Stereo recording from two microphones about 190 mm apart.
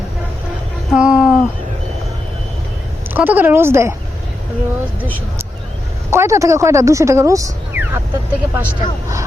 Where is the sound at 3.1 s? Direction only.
10° right (ahead or behind).